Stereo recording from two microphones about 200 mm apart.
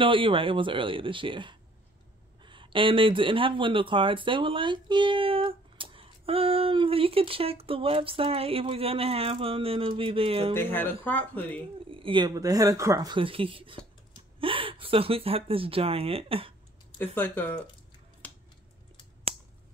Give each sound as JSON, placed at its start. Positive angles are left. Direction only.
{"t": 0.0, "sound": "speech", "side_deg": -25}
{"t": 10.5, "sound": "speech", "side_deg": 10}
{"t": 11.9, "sound": "speech", "side_deg": -25}
{"t": 17.0, "sound": "speech", "side_deg": 10}
{"t": 18.2, "sound": "a sound", "side_deg": 5}